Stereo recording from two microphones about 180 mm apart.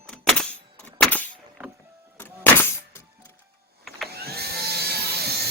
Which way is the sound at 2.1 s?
10° left (ahead or behind).